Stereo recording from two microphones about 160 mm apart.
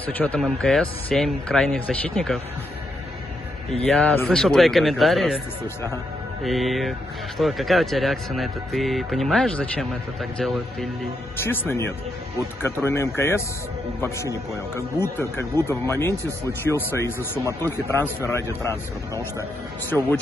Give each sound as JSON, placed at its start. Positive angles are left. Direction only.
{"t": 0.0, "sound": "a man's voice", "side_deg": 10}
{"t": 3.8, "sound": "a man's voice", "side_deg": 5}
{"t": 6.4, "sound": "a man's voice", "side_deg": 0}
{"t": 11.3, "sound": "speech", "side_deg": 15}